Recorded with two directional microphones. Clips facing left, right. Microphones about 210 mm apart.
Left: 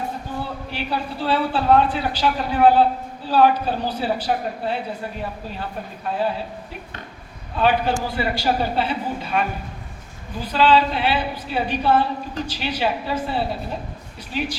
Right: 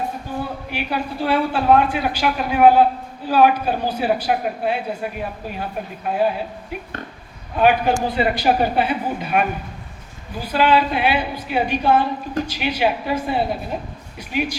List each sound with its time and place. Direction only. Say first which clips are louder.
0.7 s a woman's voice: right 1 dB; 15° right (ahead or behind)
6.1 s a woman's voice: right 4 dB; 15° right (ahead or behind)
7.5 s a woman's voice: right 3 dB; 15° right (ahead or behind)